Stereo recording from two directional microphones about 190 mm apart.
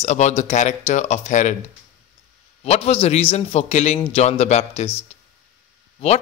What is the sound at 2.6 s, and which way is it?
Speech, 35° left (ahead or behind).